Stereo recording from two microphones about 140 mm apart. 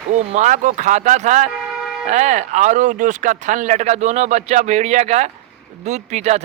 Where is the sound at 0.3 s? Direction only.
65° right (ahead or behind).